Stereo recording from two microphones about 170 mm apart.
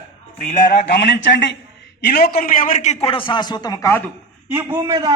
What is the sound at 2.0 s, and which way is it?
Speech, 70° left (ahead or behind).